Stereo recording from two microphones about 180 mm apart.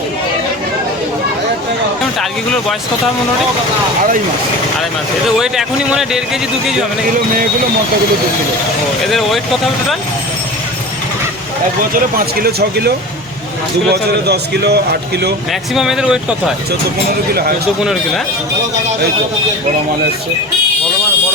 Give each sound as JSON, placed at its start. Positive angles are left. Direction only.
{"t": 5.4, "sound": "a man's voice", "side_deg": 0}
{"t": 9.0, "sound": "a man's voice", "side_deg": 0}
{"t": 11.9, "sound": "a man's voice", "side_deg": -55}
{"t": 13.9, "sound": "a man's voice", "side_deg": -65}
{"t": 15.7, "sound": "a man's voice", "side_deg": 0}